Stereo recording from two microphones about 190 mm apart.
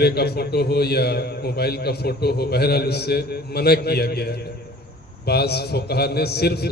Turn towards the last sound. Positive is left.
turn(degrees=55)  # may be behind; listen again after turning